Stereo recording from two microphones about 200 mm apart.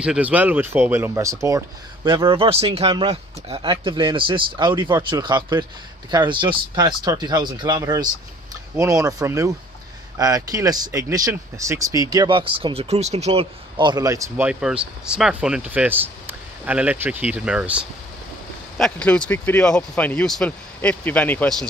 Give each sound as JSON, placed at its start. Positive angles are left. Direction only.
{"t": 0.0, "sound": "speech", "side_deg": -5}
{"t": 18.8, "sound": "speech", "side_deg": 5}